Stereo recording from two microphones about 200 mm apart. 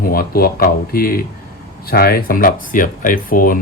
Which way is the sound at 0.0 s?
45° left (ahead or behind).